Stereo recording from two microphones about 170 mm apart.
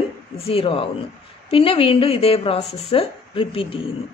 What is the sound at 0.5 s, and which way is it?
A woman's voice, 35° left (ahead or behind).